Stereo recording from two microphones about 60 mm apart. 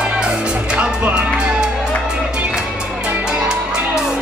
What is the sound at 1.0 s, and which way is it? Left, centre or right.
Music, right.